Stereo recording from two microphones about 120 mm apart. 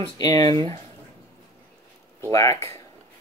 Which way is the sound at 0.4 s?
55° right (ahead or behind).